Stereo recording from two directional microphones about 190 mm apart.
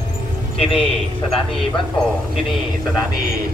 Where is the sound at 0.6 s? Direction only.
30° left (ahead or behind).